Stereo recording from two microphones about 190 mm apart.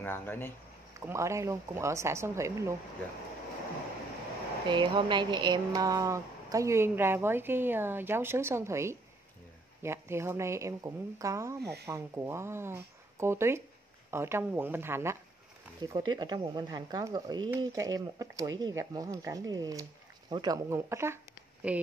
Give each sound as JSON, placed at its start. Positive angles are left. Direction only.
{"t": 0.0, "sound": "speech", "side_deg": 10}
{"t": 0.9, "sound": "speech", "side_deg": -15}
{"t": 4.6, "sound": "speech", "side_deg": -25}
{"t": 15.8, "sound": "speech", "side_deg": -20}